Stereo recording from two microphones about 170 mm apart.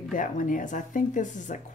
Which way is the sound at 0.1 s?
50° left (ahead or behind).